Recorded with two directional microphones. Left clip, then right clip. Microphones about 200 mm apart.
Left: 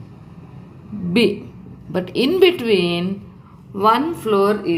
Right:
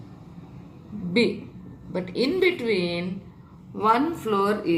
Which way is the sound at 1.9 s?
45° left (ahead or behind).